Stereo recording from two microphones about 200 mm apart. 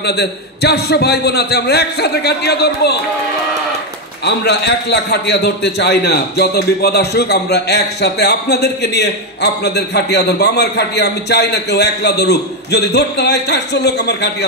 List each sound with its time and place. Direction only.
0.0 s a man's voice: 55° left (ahead or behind)
4.2 s a man's voice: 55° left (ahead or behind)